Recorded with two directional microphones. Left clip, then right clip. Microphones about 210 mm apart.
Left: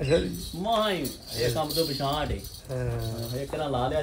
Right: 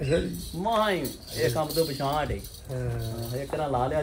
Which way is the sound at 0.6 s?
15° right (ahead or behind).